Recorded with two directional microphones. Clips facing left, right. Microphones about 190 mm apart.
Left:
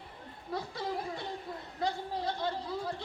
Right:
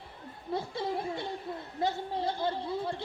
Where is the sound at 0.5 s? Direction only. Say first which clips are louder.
Right 3 dB; 25° right (ahead or behind).